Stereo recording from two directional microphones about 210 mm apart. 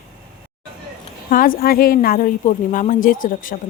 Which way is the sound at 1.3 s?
40° left (ahead or behind).